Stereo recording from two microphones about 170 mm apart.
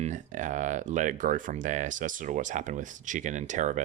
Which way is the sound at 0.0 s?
45° right (ahead or behind).